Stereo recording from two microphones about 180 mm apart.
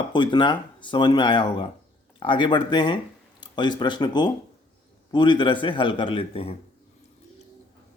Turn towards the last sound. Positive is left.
turn(degrees=30)  # may be behind; listen again after turning